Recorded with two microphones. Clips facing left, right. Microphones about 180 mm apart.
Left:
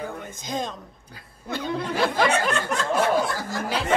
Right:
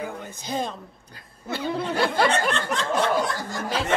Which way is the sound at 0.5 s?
10° right (ahead or behind).